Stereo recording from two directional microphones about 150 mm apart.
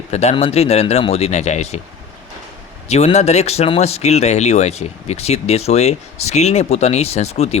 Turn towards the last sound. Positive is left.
turn(degrees=45)  # may be behind; listen again after turning